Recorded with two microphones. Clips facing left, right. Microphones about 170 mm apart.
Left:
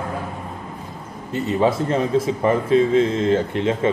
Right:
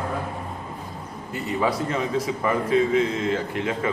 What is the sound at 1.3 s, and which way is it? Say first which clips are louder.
A man's voice: left 6 dB; 25° left (ahead or behind).